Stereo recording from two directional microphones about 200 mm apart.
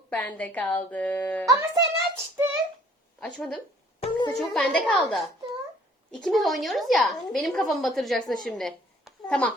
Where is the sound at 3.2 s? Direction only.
5° left (ahead or behind).